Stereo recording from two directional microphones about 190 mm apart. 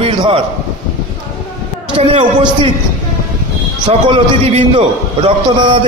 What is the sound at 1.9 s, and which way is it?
Speech, 30° right (ahead or behind).